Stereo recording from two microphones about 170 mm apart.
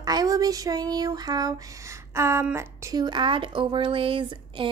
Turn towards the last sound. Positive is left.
turn(degrees=-30)  # may be behind; listen again after turning